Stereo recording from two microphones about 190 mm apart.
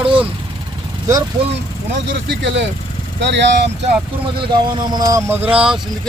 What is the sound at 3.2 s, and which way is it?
Speech, 70° right (ahead or behind).